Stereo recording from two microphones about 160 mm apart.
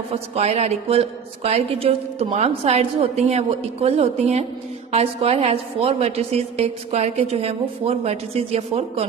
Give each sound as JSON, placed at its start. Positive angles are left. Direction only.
{"t": 0.1, "sound": "a woman's voice", "side_deg": -40}